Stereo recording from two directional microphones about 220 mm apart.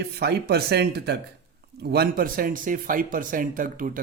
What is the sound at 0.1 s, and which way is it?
Speech, 45° right (ahead or behind).